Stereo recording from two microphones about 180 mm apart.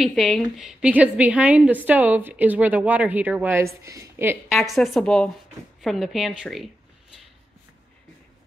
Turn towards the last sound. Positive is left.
turn(degrees=0)  # may be behind; listen again after turning